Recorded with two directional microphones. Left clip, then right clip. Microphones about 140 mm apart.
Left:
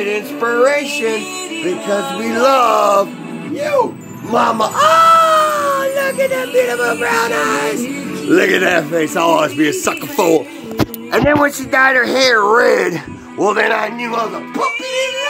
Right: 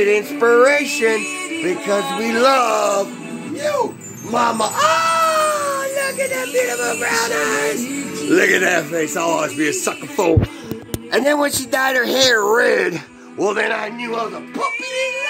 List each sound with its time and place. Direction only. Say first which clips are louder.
0.0 s music: right 3 dB; 85° right
2.6 s speech: left 5 dB; 5° left (ahead or behind)
4.3 s a man's voice: left 4 dB; 5° right (ahead or behind)
11.3 s speech: left 5 dB; 25° right (ahead or behind); by 13.8 s 10° right (ahead or behind)
14.0 s a man's voice: left 4 dB; 5° left (ahead or behind)